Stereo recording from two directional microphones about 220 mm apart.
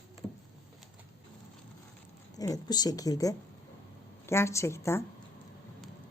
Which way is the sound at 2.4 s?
15° left (ahead or behind).